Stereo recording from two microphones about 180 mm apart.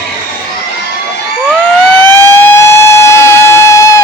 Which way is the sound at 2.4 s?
15° left (ahead or behind).